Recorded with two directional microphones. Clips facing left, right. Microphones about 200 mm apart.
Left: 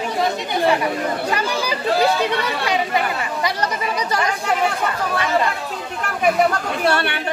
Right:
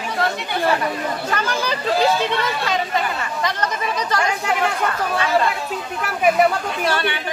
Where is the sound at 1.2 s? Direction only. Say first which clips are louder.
Left 1 dB; 10° left (ahead or behind).